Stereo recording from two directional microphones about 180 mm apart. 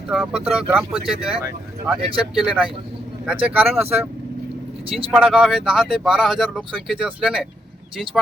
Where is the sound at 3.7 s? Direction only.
35° right (ahead or behind).